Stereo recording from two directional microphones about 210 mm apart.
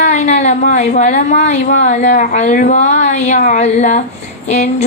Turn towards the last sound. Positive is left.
turn(degrees=35)  # may be behind; listen again after turning